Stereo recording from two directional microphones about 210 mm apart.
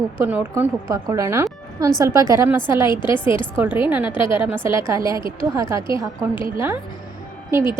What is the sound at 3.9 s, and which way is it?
Speech, 5° right (ahead or behind).